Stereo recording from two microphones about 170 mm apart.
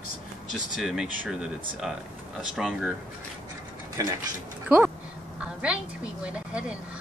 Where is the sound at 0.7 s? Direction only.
5° right (ahead or behind).